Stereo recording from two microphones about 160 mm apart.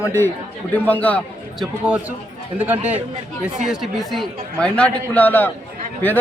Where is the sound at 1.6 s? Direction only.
5° right (ahead or behind).